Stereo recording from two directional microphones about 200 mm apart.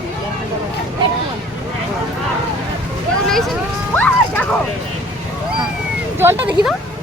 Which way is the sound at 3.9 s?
10° left (ahead or behind).